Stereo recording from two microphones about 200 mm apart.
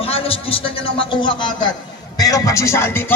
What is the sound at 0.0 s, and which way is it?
A man's voice, 30° left (ahead or behind).